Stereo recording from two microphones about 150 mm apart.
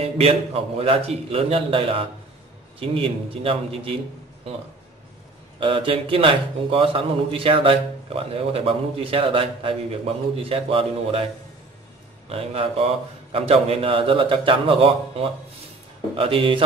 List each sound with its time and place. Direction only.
0.0 s speech: 40° right (ahead or behind)
5.6 s speech: 35° right (ahead or behind)
12.3 s speech: 40° right (ahead or behind)